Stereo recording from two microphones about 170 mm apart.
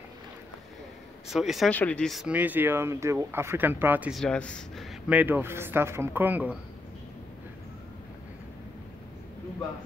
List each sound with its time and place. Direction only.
1.3 s speech: centre (ahead or behind)
4.2 s speech: 5° left (ahead or behind)
5.1 s speech: 10° right (ahead or behind)